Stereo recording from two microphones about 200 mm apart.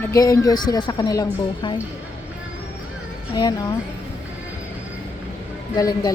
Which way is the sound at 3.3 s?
20° left (ahead or behind).